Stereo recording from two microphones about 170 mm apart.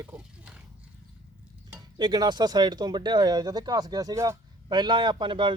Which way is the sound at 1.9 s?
25° right (ahead or behind).